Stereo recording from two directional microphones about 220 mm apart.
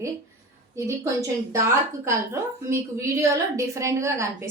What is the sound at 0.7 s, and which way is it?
A woman's voice, 15° right (ahead or behind).